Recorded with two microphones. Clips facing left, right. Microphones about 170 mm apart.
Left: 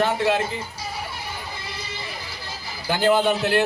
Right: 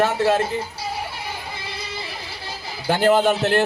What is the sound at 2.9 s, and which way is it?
Speech, 45° right (ahead or behind).